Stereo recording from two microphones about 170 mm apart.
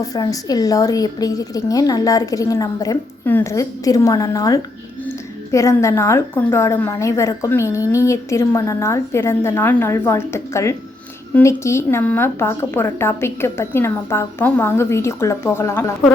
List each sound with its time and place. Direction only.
0.0 s a woman's voice: 20° left (ahead or behind)